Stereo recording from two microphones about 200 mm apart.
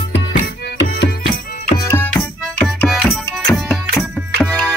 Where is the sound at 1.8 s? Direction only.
15° left (ahead or behind).